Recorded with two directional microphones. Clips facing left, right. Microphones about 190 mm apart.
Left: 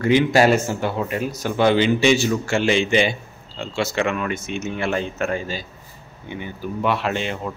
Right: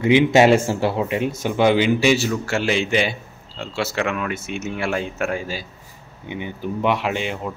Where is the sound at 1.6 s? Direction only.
10° right (ahead or behind).